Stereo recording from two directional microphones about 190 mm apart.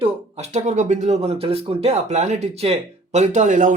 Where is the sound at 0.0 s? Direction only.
35° right (ahead or behind).